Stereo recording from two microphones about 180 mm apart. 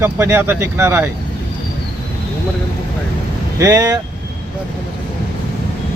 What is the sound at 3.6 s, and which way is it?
Speech, 20° right (ahead or behind).